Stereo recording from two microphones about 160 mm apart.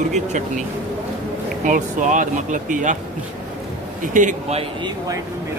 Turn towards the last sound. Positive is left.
turn(degrees=-50)  # may be behind; listen again after turning